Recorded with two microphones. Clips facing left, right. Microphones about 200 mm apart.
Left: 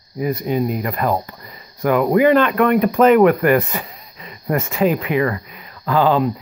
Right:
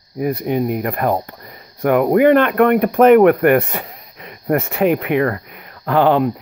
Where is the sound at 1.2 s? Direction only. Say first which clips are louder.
Right 1 dB; 60° right (ahead or behind).